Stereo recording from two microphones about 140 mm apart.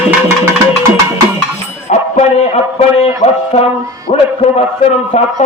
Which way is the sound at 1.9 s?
55° left (ahead or behind).